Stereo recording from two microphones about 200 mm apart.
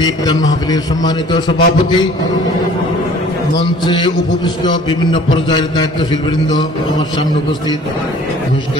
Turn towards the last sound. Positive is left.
turn(degrees=20)  # may be behind; listen again after turning